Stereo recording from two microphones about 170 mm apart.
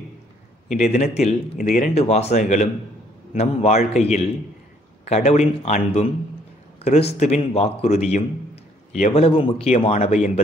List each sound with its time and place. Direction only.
0.7 s speech: 45° left (ahead or behind)